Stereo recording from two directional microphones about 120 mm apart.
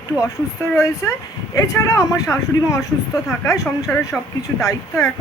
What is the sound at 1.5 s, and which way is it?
Speech, 25° left (ahead or behind).